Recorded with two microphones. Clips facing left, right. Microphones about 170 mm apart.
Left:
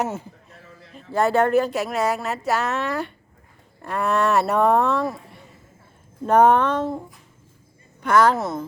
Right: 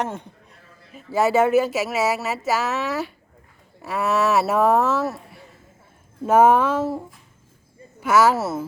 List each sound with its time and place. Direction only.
0.0 s speech: 5° left (ahead or behind)